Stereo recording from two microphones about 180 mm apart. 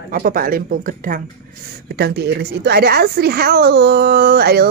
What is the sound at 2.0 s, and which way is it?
A woman's voice, 65° right (ahead or behind).